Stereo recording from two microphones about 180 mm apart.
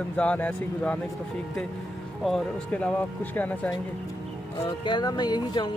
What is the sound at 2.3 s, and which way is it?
Speech, 5° left (ahead or behind).